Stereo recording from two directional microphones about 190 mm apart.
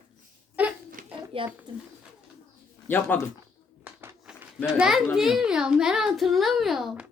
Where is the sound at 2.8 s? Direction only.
10° left (ahead or behind).